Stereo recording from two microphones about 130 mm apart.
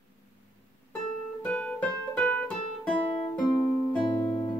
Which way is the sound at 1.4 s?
10° left (ahead or behind).